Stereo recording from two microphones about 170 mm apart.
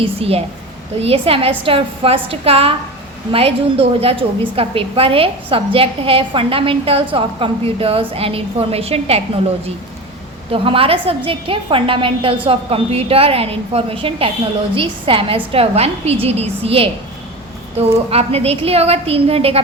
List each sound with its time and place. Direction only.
0.0 s a woman's voice: 35° right (ahead or behind)
10.5 s a woman's voice: 35° right (ahead or behind)